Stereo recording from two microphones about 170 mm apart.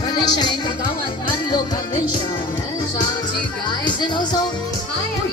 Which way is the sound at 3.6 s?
25° left (ahead or behind).